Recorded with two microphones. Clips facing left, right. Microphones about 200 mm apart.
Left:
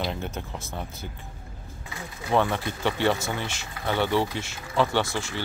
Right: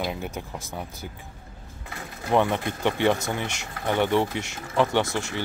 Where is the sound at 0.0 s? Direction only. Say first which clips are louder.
Right 1 dB; 10° right (ahead or behind).